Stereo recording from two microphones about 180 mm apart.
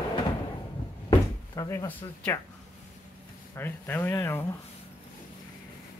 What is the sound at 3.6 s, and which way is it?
Speech, 10° left (ahead or behind).